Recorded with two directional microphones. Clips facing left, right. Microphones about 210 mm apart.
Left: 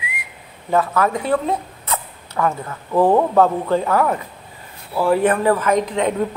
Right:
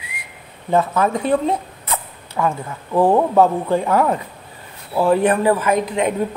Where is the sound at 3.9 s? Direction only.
20° right (ahead or behind).